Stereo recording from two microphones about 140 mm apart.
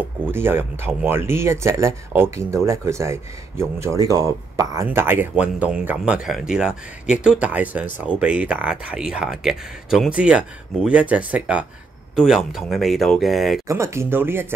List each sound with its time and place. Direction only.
0.3 s speech: 15° right (ahead or behind)
4.8 s speech: 15° right (ahead or behind)
13.7 s speech: 20° right (ahead or behind)